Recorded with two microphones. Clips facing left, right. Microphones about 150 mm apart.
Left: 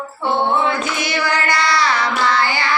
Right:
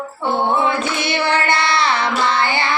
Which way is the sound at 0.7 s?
25° right (ahead or behind).